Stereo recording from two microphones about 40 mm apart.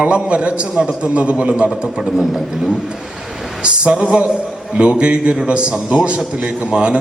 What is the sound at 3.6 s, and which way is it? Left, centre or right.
A man's voice, right.